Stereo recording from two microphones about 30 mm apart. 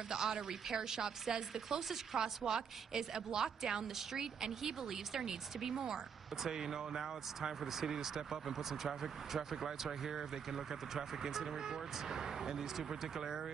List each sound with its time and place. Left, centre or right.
0.1 s a woman's voice: right